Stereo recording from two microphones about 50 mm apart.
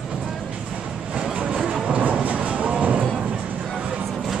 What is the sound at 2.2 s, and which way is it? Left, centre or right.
Music, right.